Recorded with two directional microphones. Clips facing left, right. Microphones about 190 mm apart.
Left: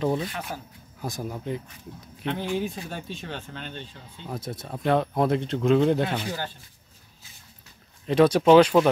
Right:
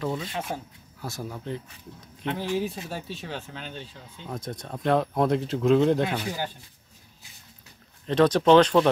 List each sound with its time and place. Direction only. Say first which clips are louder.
0.0 s speech: left 5 dB; 25° left (ahead or behind)
0.5 s speech: right 3 dB; 25° right (ahead or behind)
1.0 s speech: left 3 dB; 15° left (ahead or behind)
2.2 s speech: even; centre (ahead or behind)
6.1 s speech: even; 15° right (ahead or behind)
8.1 s speech: left 2 dB; 10° left (ahead or behind)